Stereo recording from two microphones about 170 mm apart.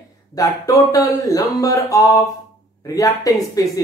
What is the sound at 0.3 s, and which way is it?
Speech, 20° left (ahead or behind).